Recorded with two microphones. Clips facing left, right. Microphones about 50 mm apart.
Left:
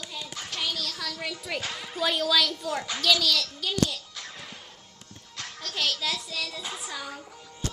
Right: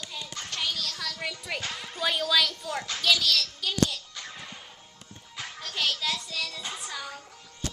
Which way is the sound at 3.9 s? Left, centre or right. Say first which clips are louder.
Even; centre.